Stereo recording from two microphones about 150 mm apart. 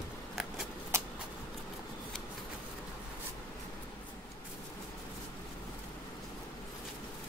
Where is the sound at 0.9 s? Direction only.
15° right (ahead or behind).